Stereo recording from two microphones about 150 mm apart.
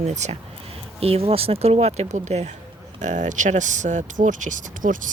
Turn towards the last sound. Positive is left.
turn(degrees=-60)  # may be behind; listen again after turning